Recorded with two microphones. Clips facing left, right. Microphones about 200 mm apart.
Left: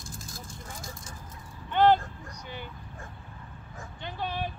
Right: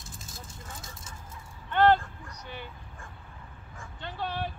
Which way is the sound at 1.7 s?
10° left (ahead or behind).